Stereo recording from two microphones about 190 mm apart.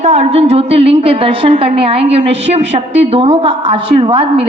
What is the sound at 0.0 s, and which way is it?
A woman's voice, 35° right (ahead or behind).